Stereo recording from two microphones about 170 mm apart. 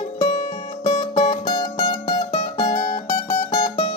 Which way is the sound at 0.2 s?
25° left (ahead or behind).